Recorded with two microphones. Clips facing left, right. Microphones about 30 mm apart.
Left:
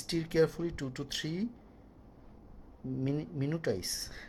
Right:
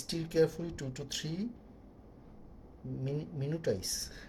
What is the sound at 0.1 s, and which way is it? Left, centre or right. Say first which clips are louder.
Speech: left 1 dB; left.